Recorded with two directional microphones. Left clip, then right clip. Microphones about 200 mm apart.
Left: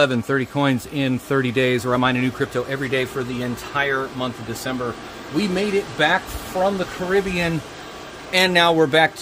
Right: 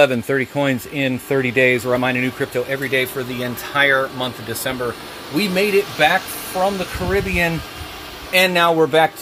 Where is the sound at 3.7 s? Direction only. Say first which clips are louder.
Right 6 dB; 30° right (ahead or behind).